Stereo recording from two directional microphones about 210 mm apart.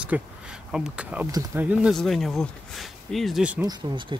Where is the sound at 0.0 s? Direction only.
5° right (ahead or behind).